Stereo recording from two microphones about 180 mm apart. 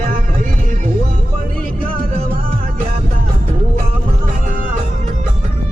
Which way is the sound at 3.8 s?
45° right (ahead or behind).